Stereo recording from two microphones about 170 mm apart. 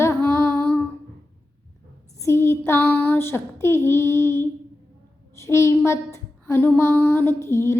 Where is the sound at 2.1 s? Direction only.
15° left (ahead or behind).